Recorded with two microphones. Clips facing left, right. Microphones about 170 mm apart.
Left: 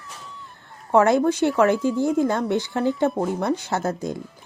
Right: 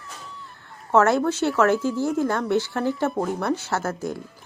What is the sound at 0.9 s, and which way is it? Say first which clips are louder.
Speech: left 2 dB; 15° left (ahead or behind).